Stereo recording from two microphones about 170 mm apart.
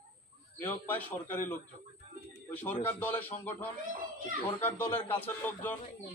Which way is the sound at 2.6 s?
10° left (ahead or behind).